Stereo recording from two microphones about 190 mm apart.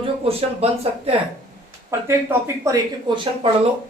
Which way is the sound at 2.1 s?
15° right (ahead or behind).